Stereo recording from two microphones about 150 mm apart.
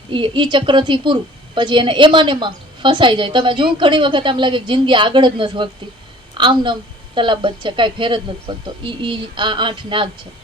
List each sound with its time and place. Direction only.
0.1 s a woman's voice: 35° right (ahead or behind)